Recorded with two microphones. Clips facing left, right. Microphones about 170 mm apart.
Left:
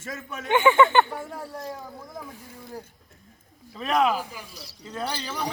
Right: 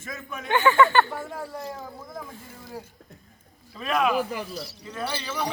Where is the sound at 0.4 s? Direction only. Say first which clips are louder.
Left 1 dB; 20° left (ahead or behind).